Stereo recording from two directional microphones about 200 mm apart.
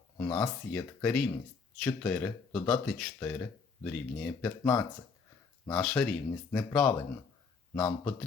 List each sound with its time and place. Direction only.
0.2 s speech: 10° left (ahead or behind)
7.8 s speech: 15° left (ahead or behind)